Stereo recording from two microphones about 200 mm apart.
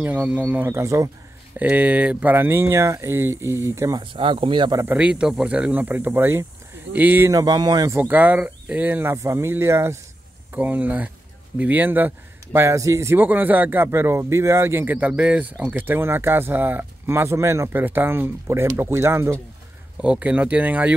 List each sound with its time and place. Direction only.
0.0 s a man's voice: 10° right (ahead or behind)
4.9 s a man's voice: 5° right (ahead or behind)
8.0 s a man's voice: 10° right (ahead or behind)